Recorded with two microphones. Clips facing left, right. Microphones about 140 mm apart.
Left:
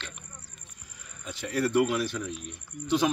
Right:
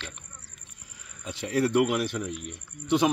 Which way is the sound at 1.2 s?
25° right (ahead or behind).